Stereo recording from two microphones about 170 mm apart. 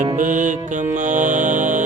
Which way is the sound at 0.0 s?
50° right (ahead or behind).